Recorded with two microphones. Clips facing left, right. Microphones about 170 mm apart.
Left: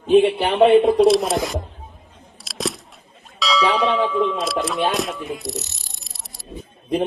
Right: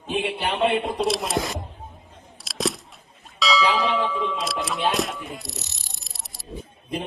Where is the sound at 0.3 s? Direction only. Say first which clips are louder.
Left 8 dB; 60° left (ahead or behind).